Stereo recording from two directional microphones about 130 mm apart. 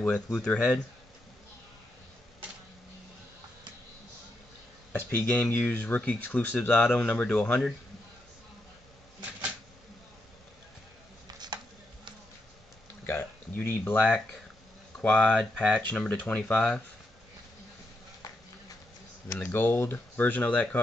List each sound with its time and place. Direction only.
0.0 s speech: 5° left (ahead or behind)
4.9 s speech: 10° left (ahead or behind)
11.3 s a sound: 35° right (ahead or behind)
13.0 s a sound: 15° left (ahead or behind)
15.0 s speech: 10° left (ahead or behind)
19.3 s speech: 15° left (ahead or behind)